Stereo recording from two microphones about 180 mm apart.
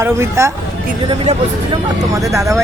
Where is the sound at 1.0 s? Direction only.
30° right (ahead or behind).